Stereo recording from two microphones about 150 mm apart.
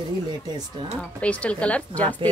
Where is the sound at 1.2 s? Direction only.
10° left (ahead or behind).